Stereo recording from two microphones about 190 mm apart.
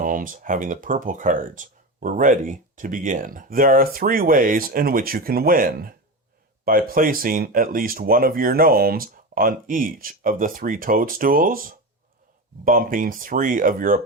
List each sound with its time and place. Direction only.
0.0 s speech: 45° right (ahead or behind)